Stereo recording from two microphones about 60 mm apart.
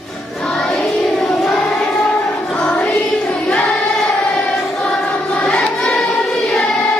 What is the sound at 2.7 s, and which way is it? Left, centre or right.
Music, centre.